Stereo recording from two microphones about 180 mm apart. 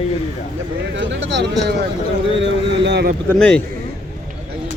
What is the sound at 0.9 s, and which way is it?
Speech, 90° right.